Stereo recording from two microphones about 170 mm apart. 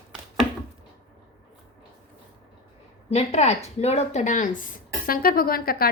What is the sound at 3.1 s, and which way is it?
Speech, 40° left (ahead or behind).